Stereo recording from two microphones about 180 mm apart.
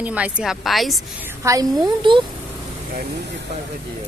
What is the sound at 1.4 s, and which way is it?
Speech, 20° right (ahead or behind).